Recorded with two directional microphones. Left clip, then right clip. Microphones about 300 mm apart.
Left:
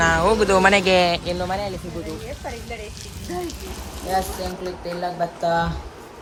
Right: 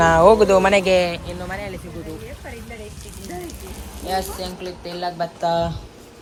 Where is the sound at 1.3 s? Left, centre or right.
Left.